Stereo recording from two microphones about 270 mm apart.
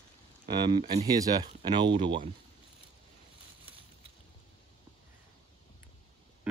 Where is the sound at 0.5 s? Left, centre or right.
Centre.